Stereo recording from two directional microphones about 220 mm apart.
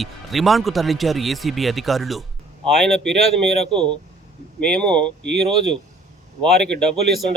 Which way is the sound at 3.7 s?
20° right (ahead or behind).